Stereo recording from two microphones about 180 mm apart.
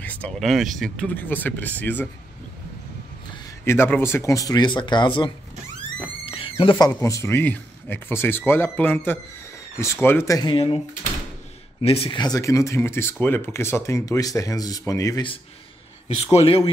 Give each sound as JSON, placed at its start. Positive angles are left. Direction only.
{"t": 0.0, "sound": "speech", "side_deg": 10}
{"t": 3.6, "sound": "speech", "side_deg": 15}
{"t": 6.2, "sound": "a sound", "side_deg": 30}
{"t": 6.5, "sound": "speech", "side_deg": 25}
{"t": 11.8, "sound": "speech", "side_deg": 30}
{"t": 16.3, "sound": "a man's voice", "side_deg": 35}